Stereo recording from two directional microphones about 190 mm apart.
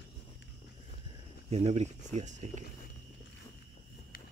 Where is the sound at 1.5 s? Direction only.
35° right (ahead or behind).